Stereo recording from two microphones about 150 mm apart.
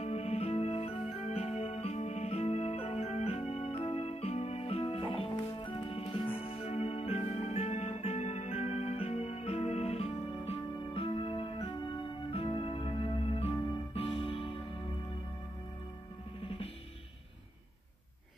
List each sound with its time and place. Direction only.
0.0 s music: 45° left (ahead or behind)